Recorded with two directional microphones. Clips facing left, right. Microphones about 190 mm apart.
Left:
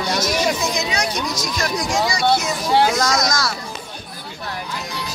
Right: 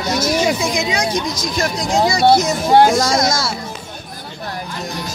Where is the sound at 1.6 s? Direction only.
30° right (ahead or behind).